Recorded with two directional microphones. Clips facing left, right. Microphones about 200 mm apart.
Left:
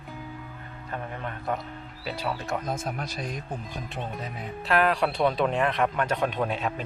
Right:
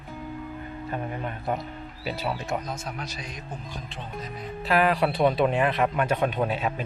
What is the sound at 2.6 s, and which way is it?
Speech, 50° left (ahead or behind).